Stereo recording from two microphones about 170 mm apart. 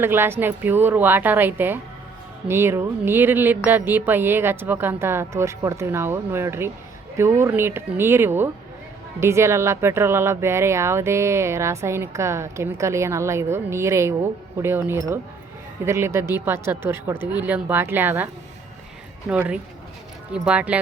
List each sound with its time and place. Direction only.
0.0 s speech: 15° right (ahead or behind)
19.3 s speech: 5° right (ahead or behind)